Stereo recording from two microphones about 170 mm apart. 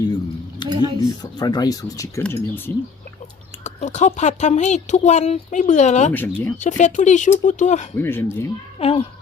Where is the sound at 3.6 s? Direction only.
45° left (ahead or behind).